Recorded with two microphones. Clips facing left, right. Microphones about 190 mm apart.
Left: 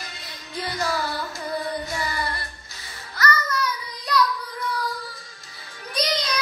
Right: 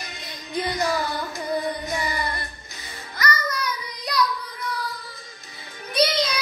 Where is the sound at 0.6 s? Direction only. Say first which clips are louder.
Right 3 dB; 20° right (ahead or behind).